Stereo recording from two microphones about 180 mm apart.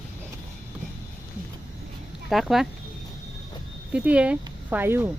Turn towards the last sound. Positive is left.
turn(degrees=-10)  # may be behind; listen again after turning